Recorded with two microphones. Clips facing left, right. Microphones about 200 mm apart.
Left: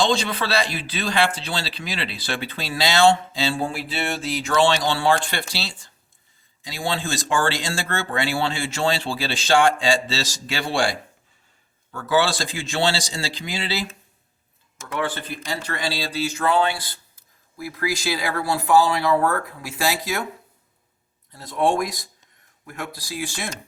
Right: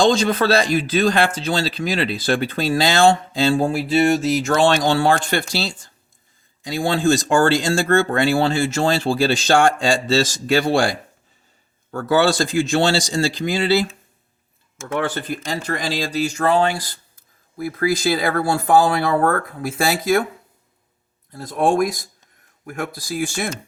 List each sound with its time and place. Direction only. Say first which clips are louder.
0.0 s a man's voice: right 6 dB; 45° right (ahead or behind)
14.9 s a man's voice: right 4 dB; 45° right (ahead or behind)
17.7 s a man's voice: right 6 dB; 50° right (ahead or behind)
21.3 s a man's voice: right 3 dB; 50° right (ahead or behind)